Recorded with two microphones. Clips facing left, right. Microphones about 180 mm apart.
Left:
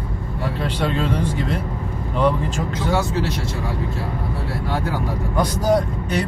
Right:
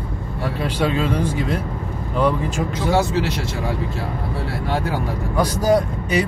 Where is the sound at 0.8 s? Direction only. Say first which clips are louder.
Right 3 dB; 5° right (ahead or behind).